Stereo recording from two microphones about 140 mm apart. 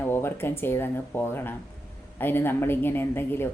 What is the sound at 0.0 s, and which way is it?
Speech, 15° left (ahead or behind).